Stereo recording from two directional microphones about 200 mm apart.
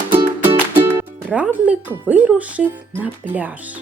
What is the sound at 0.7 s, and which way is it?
Speech, 10° right (ahead or behind).